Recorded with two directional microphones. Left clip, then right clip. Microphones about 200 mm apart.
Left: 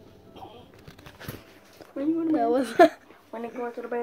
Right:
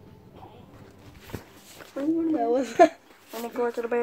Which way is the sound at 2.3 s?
15° left (ahead or behind).